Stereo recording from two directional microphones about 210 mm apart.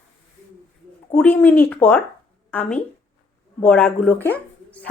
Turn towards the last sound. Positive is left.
turn(degrees=5)  # may be behind; listen again after turning